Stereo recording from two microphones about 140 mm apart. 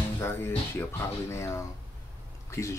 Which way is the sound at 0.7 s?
20° left (ahead or behind).